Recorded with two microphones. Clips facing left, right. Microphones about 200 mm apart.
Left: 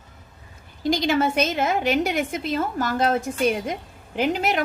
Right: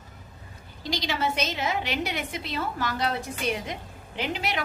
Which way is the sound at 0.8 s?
50° left (ahead or behind).